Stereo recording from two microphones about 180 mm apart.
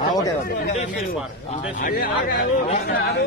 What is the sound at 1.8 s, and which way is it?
Speech, 55° left (ahead or behind).